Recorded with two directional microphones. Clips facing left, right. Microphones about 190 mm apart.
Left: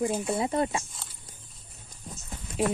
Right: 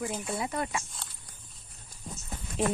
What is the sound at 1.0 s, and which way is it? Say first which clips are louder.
Walk: even; centre (ahead or behind).